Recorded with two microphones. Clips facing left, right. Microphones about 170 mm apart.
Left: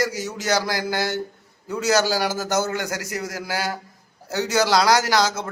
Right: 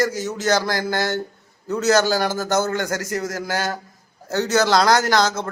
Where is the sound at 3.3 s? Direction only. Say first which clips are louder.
Right 2 dB; 10° left (ahead or behind).